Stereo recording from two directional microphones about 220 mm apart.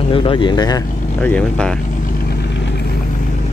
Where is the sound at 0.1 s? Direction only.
20° left (ahead or behind).